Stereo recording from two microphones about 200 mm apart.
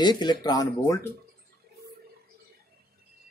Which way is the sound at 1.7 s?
50° right (ahead or behind).